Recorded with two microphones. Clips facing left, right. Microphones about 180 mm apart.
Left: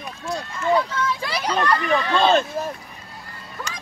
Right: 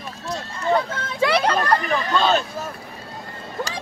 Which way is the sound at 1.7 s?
40° right (ahead or behind).